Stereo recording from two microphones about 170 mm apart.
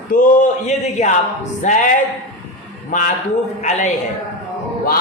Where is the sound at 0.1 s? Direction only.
50° left (ahead or behind).